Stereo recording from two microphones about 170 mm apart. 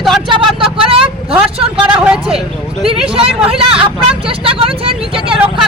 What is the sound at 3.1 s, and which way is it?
Speech, 35° right (ahead or behind).